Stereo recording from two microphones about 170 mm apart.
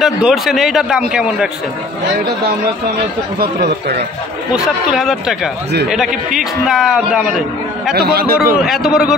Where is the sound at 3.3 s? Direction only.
80° right.